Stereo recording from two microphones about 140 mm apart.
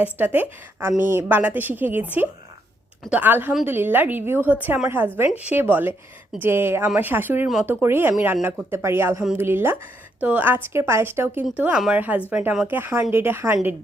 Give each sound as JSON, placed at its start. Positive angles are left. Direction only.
{"t": 0.0, "sound": "a woman's voice", "side_deg": -15}